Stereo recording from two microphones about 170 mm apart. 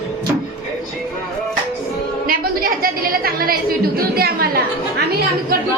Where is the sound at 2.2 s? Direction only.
60° right (ahead or behind).